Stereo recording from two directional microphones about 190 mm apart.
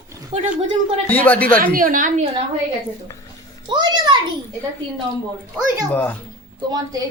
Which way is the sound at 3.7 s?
25° right (ahead or behind).